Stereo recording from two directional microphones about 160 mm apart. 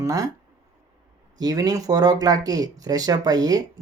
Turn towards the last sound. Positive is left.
turn(degrees=-25)  # may be behind; listen again after turning